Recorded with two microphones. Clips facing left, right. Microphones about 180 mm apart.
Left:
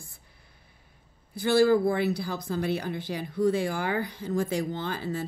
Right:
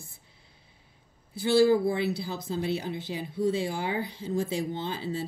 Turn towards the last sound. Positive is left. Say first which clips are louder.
# left 1 dB
turn(degrees=50)  # may be behind; listen again after turning